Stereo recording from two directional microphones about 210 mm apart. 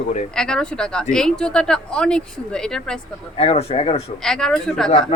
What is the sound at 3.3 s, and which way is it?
Speech, 30° left (ahead or behind).